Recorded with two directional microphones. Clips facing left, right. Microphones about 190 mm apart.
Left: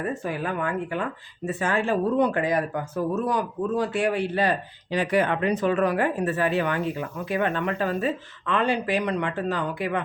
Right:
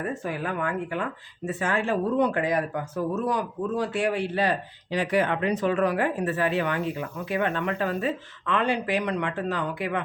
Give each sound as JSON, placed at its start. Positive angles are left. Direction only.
{"t": 0.0, "sound": "speech", "side_deg": 25}